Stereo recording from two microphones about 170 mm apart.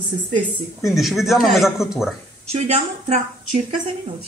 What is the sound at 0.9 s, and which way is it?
A man's voice, centre (ahead or behind).